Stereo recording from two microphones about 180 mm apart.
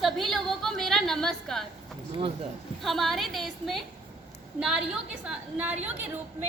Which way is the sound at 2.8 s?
Centre (ahead or behind).